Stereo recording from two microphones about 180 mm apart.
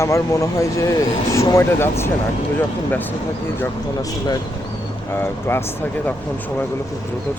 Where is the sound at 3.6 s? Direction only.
20° left (ahead or behind).